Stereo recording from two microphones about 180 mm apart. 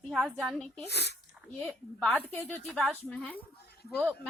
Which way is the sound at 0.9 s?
70° left (ahead or behind).